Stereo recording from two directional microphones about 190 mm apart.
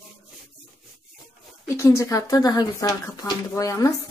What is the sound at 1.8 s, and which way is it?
Speech, 15° left (ahead or behind).